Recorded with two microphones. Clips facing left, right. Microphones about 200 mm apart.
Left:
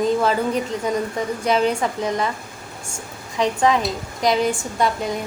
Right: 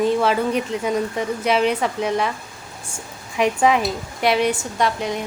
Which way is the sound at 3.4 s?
10° right (ahead or behind).